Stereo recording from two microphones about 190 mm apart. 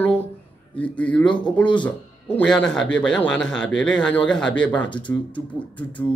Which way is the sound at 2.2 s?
5° left (ahead or behind).